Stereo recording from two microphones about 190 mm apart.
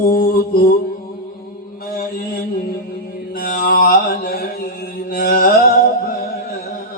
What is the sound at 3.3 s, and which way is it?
Mantra, 50° left (ahead or behind).